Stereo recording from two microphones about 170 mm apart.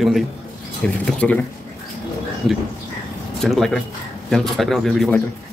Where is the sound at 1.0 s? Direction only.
5° left (ahead or behind).